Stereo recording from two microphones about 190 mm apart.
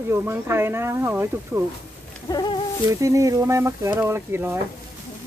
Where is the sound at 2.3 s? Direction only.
20° left (ahead or behind).